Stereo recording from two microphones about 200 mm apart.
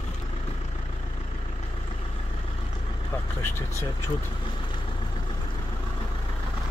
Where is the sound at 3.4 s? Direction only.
15° left (ahead or behind).